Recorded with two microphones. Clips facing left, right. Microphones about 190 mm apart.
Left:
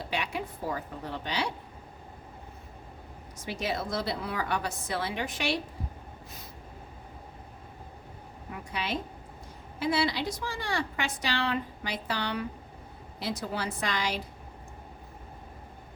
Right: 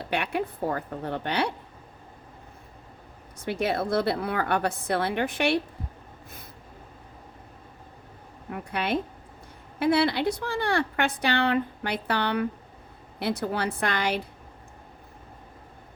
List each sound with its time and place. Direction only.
0.0 s a woman's voice: 60° right (ahead or behind)
3.4 s a woman's voice: 55° right (ahead or behind)
8.4 s a woman's voice: 55° right (ahead or behind)